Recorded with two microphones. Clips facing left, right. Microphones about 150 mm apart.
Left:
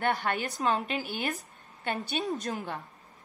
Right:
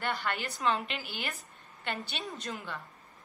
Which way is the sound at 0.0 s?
50° left (ahead or behind).